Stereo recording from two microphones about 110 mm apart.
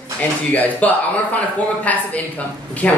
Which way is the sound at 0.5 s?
15° left (ahead or behind).